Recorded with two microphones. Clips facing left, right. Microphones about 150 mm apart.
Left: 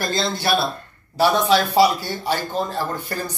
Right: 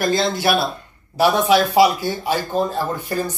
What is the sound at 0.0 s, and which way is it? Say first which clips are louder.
Speech: right 5 dB; 15° right (ahead or behind).